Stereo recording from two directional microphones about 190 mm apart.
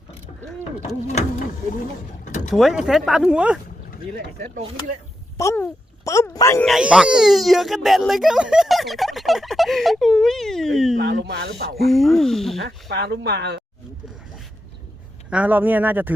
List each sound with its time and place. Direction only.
2.2 s a sound: 40° left (ahead or behind)
2.6 s speech: 5° right (ahead or behind)
5.4 s speech: 15° left (ahead or behind)
6.7 s speech: centre (ahead or behind)
10.9 s speech: 65° right (ahead or behind)
11.9 s speech: centre (ahead or behind)
12.6 s speech: 65° right (ahead or behind)
15.3 s speech: 10° right (ahead or behind)